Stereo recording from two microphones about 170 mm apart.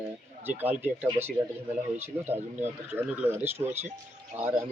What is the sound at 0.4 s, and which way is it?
Speech, 10° right (ahead or behind).